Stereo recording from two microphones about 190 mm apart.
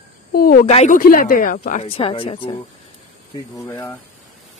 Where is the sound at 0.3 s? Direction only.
50° left (ahead or behind).